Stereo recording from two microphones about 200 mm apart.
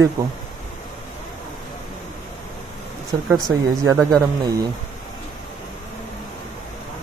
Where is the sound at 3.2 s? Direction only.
Centre (ahead or behind).